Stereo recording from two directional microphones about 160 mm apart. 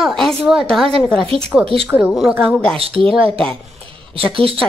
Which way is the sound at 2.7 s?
35° right (ahead or behind).